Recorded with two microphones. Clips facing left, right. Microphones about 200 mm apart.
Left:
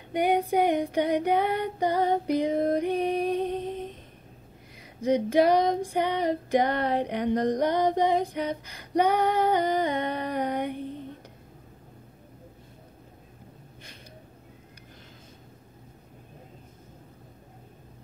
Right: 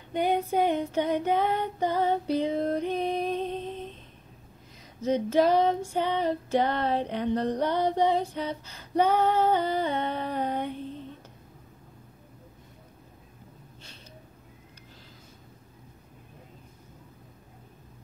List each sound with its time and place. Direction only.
0.1 s female singing: 15° left (ahead or behind)
5.0 s female singing: 15° left (ahead or behind)